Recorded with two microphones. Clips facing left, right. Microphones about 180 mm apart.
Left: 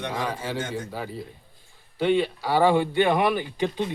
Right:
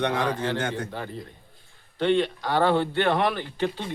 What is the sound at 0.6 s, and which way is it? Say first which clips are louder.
Speech: right 2 dB; 65° right (ahead or behind).